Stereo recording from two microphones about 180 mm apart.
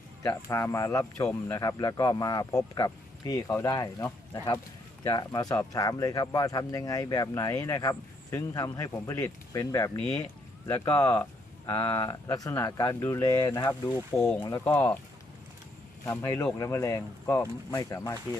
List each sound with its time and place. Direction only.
0.2 s speech: 15° left (ahead or behind)
14.2 s speech: 10° left (ahead or behind)
16.0 s speech: 15° left (ahead or behind)